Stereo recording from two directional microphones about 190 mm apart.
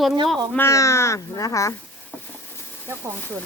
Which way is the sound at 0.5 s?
15° left (ahead or behind).